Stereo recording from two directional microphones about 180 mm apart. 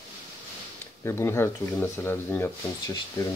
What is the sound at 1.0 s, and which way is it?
Speech, 15° left (ahead or behind).